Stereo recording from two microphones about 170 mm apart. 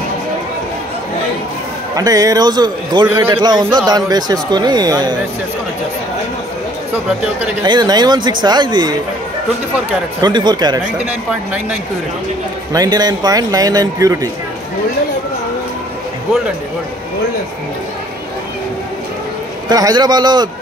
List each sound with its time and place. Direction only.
2.0 s speech: 20° right (ahead or behind)
7.6 s speech: 25° right (ahead or behind)
10.2 s speech: 25° right (ahead or behind)
12.7 s speech: 20° right (ahead or behind)
19.7 s speech: 25° right (ahead or behind)